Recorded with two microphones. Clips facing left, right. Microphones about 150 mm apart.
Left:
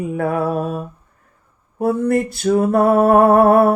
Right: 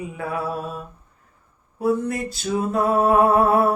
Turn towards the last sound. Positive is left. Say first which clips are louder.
# left 6 dB
turn(degrees=60)  # may be behind; listen again after turning